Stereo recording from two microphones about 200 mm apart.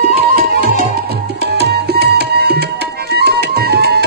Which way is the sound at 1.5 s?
55° right (ahead or behind).